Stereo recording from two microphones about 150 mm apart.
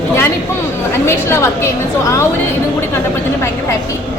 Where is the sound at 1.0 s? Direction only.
15° left (ahead or behind).